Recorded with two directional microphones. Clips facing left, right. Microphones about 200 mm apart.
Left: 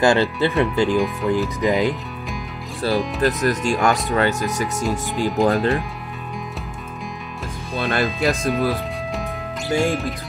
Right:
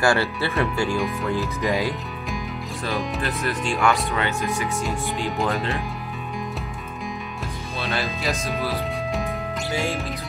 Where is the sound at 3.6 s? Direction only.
40° left (ahead or behind).